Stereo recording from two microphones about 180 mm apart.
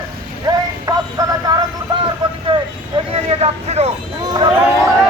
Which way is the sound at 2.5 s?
30° right (ahead or behind).